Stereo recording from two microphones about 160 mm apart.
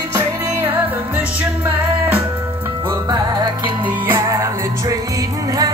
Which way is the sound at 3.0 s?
25° right (ahead or behind).